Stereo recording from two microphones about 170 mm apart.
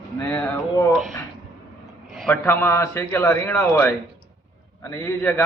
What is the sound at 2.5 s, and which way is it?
A man's voice, 15° left (ahead or behind).